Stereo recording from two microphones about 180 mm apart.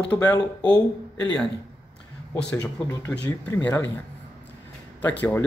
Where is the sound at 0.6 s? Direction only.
25° left (ahead or behind).